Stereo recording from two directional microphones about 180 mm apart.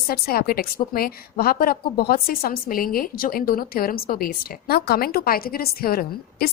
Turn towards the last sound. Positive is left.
turn(degrees=55)  # may be behind; listen again after turning